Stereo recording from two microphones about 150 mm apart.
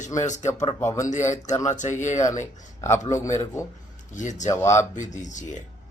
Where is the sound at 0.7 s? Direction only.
20° left (ahead or behind).